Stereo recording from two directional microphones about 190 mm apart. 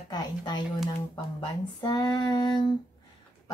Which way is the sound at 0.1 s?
20° left (ahead or behind).